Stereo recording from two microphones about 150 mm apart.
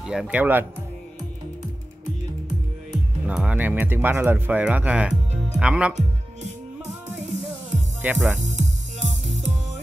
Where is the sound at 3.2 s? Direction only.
10° right (ahead or behind).